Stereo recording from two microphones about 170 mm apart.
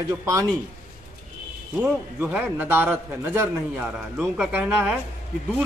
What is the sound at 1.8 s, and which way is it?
A man's voice, 10° right (ahead or behind).